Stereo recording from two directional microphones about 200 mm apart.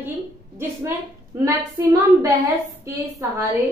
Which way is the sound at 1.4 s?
15° right (ahead or behind).